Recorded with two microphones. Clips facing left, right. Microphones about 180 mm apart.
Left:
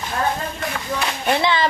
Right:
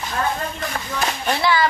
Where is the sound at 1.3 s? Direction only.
20° left (ahead or behind).